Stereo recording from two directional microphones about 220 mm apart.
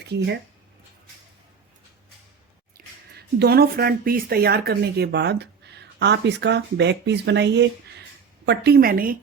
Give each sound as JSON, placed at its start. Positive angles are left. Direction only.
{"t": 2.7, "sound": "a woman's voice", "side_deg": -45}